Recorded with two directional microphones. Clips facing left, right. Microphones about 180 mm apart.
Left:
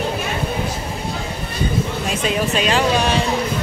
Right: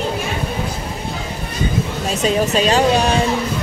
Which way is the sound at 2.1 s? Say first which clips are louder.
Right 5 dB; 40° right (ahead or behind).